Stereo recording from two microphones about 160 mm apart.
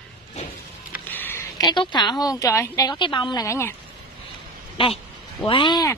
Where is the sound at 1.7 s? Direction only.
25° left (ahead or behind).